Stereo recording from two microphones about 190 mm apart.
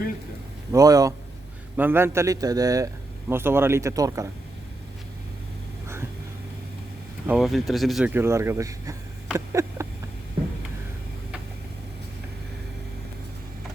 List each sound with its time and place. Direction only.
0.7 s speech: 20° right (ahead or behind)
7.3 s speech: centre (ahead or behind)
8.1 s speech: 15° right (ahead or behind)
9.3 s a sound: 15° right (ahead or behind)